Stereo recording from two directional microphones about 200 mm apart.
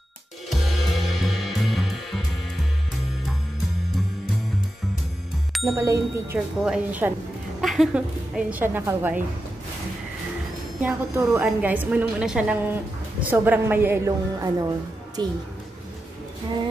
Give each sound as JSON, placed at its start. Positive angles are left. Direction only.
{"t": 0.5, "sound": "music", "side_deg": 0}
{"t": 5.5, "sound": "bicycle bell", "side_deg": 0}
{"t": 5.8, "sound": "a woman's voice", "side_deg": -15}
{"t": 10.8, "sound": "a woman's voice", "side_deg": -10}